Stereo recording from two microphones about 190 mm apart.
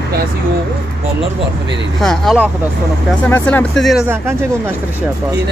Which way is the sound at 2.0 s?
Centre (ahead or behind).